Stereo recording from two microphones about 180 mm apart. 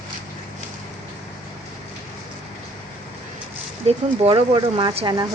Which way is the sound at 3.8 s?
30° right (ahead or behind).